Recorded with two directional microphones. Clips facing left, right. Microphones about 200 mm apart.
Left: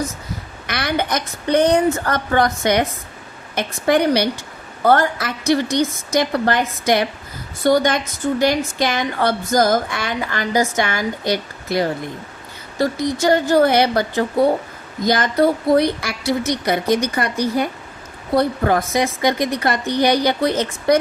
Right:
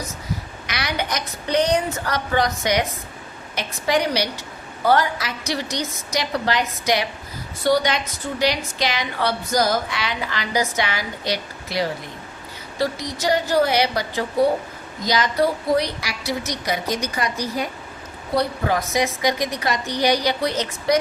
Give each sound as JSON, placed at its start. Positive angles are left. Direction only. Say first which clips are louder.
{"t": 0.7, "sound": "a woman's voice", "louder": "left 5 dB", "side_deg": 55}